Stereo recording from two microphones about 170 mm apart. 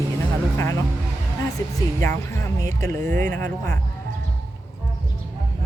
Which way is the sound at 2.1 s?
15° left (ahead or behind).